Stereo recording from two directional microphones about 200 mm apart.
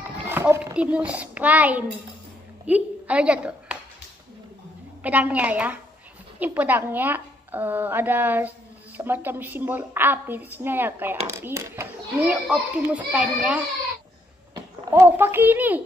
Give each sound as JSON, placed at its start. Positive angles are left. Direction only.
{"t": 0.2, "sound": "a child's voice", "side_deg": -10}
{"t": 5.0, "sound": "a woman's voice", "side_deg": -5}
{"t": 14.9, "sound": "a woman's voice", "side_deg": -10}